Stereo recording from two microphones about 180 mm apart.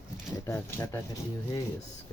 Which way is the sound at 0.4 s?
15° left (ahead or behind).